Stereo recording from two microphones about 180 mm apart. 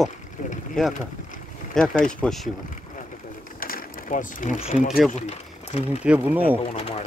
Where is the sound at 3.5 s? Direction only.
50° left (ahead or behind).